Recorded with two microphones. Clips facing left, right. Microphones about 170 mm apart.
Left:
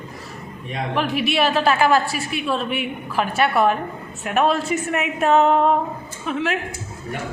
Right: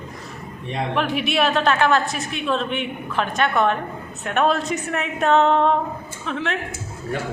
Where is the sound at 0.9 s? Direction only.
Centre (ahead or behind).